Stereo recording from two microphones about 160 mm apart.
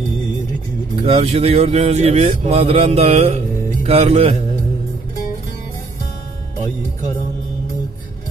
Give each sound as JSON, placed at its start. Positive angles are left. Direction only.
{"t": 1.0, "sound": "speech", "side_deg": -40}